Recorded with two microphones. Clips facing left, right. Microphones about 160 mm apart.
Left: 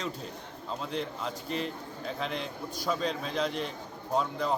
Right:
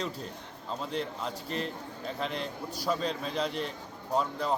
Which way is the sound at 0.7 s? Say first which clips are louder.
Even; centre (ahead or behind).